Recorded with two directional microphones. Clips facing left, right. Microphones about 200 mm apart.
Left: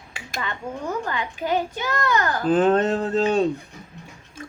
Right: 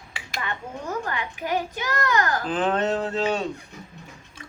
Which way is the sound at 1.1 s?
25° left (ahead or behind).